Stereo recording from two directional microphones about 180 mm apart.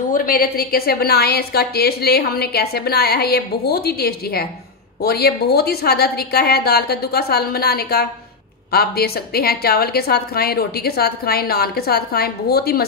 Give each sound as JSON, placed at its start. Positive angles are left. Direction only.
{"t": 0.1, "sound": "a woman's voice", "side_deg": 50}